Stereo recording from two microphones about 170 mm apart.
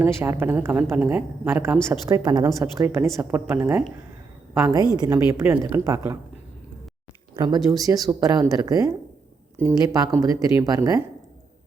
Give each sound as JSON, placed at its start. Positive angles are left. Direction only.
{"t": 0.0, "sound": "a woman's voice", "side_deg": -15}
{"t": 4.9, "sound": "a woman's voice", "side_deg": -20}
{"t": 7.3, "sound": "speech", "side_deg": -25}